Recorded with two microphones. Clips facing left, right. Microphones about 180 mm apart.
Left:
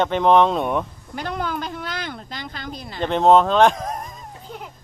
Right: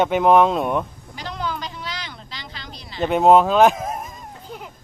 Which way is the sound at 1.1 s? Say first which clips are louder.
Left 3 dB; 55° left (ahead or behind).